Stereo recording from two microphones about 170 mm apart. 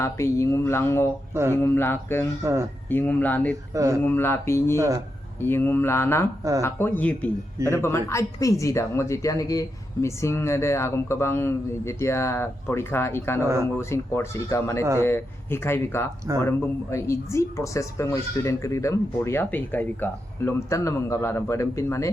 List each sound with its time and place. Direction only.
0.0 s speech: 15° left (ahead or behind)
1.3 s a sound: 15° right (ahead or behind)
1.5 s speech: 15° left (ahead or behind)
2.4 s speech: 15° right (ahead or behind)
2.9 s speech: 10° left (ahead or behind)
3.8 s speech: 20° right (ahead or behind)
4.0 s speech: 15° left (ahead or behind)
4.8 s speech: 20° right (ahead or behind)
5.4 s speech: 15° left (ahead or behind)
13.4 s speech: 15° right (ahead or behind)
13.7 s speech: 15° left (ahead or behind)